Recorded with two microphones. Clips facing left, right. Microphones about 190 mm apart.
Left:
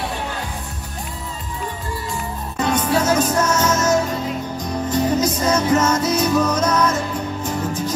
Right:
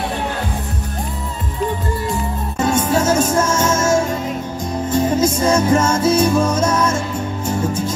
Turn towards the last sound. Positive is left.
turn(degrees=-25)  # may be behind; listen again after turning